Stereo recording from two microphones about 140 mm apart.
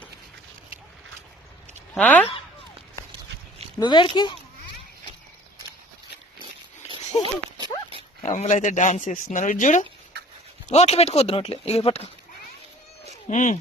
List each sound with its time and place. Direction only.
2.0 s speech: 10° left (ahead or behind)
3.8 s speech: 30° left (ahead or behind)
7.1 s speech: 45° left (ahead or behind)
8.2 s speech: 55° left (ahead or behind)
10.7 s speech: 50° left (ahead or behind)
13.2 s speech: 65° left (ahead or behind)